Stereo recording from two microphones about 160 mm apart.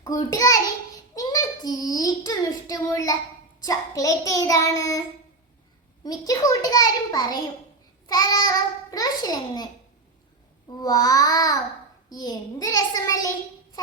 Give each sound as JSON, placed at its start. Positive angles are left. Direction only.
{"t": 0.0, "sound": "a child's voice", "side_deg": 20}
{"t": 10.8, "sound": "a child's voice", "side_deg": 25}